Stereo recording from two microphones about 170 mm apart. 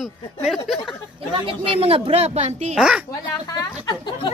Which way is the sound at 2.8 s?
5° right (ahead or behind).